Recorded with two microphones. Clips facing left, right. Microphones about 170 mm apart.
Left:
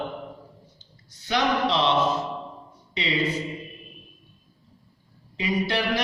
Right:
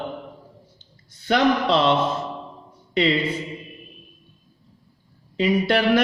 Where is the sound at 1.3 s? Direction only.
55° right (ahead or behind).